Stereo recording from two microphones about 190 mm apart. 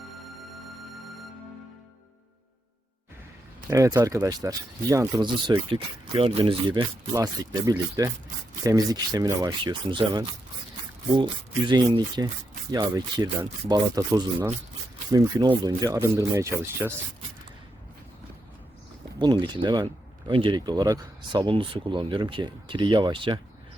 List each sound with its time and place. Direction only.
3.7 s speech: 15° right (ahead or behind)
19.2 s speech: 25° right (ahead or behind)